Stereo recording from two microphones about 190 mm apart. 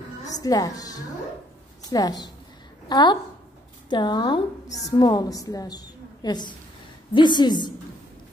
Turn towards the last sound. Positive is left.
turn(degrees=25)  # may be behind; listen again after turning